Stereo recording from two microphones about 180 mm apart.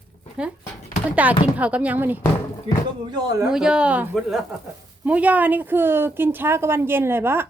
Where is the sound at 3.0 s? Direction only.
25° right (ahead or behind).